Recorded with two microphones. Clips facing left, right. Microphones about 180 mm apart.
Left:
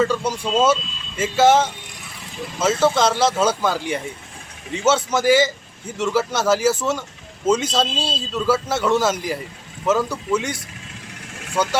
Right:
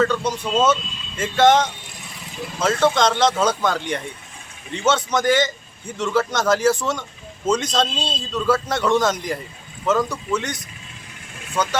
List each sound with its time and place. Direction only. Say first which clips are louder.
0.0 s speech: even; 10° left (ahead or behind)